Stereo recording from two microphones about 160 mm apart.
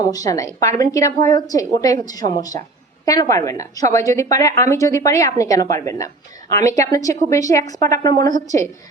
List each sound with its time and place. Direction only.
0.0 s a woman's voice: 20° left (ahead or behind)